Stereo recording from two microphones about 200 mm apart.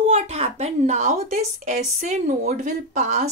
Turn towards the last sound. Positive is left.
turn(degrees=-35)  # may be behind; listen again after turning